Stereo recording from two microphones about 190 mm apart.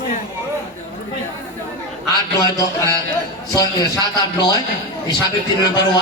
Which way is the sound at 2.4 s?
15° left (ahead or behind).